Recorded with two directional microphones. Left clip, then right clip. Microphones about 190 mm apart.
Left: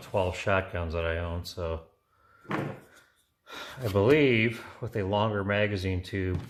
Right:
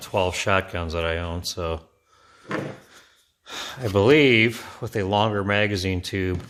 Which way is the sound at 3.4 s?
55° right (ahead or behind).